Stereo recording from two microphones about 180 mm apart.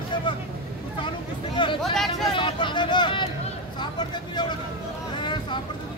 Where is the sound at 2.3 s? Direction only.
25° left (ahead or behind).